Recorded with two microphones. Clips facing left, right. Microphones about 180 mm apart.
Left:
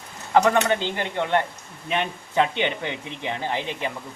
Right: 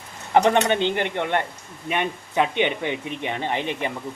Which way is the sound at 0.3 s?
25° right (ahead or behind).